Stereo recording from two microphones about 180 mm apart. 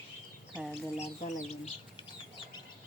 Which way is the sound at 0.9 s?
35° left (ahead or behind).